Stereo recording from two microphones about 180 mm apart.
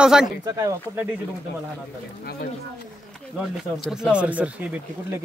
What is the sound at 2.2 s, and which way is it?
Speech, 65° left (ahead or behind).